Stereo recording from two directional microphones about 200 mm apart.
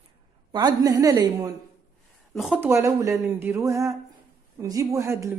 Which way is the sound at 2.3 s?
Centre (ahead or behind).